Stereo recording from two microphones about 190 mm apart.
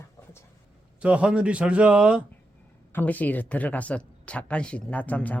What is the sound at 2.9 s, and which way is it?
Speech, 10° left (ahead or behind).